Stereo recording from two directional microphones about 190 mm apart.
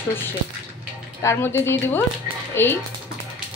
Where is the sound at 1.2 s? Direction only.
15° left (ahead or behind).